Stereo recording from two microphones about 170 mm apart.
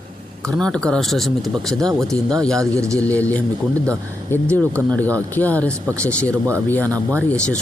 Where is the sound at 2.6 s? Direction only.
20° right (ahead or behind).